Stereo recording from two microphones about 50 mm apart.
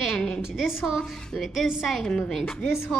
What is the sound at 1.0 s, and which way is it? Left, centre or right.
A woman's voice, centre.